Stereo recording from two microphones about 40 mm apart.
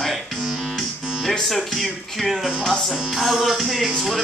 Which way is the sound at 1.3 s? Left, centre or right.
Centre.